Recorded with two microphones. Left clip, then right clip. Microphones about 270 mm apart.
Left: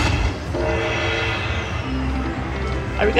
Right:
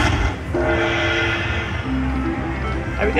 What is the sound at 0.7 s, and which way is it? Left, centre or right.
Music, centre.